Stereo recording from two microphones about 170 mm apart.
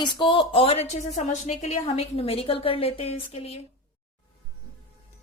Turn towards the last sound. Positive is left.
turn(degrees=35)  # may be behind; listen again after turning